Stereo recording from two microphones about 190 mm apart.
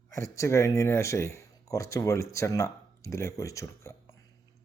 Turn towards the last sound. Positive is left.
turn(degrees=15)  # may be behind; listen again after turning